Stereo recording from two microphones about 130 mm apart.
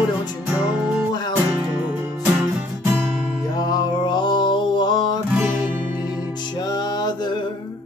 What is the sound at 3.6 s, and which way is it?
Mantra, 30° left (ahead or behind).